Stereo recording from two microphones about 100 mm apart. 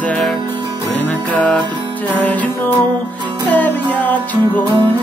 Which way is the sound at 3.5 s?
15° left (ahead or behind).